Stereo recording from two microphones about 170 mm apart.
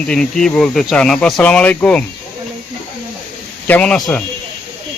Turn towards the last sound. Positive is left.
turn(degrees=5)  # may be behind; listen again after turning